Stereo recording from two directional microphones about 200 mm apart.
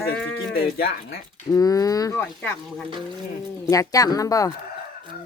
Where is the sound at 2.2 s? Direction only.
5° left (ahead or behind).